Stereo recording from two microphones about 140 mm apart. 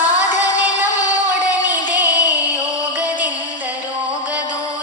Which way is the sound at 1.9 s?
10° right (ahead or behind).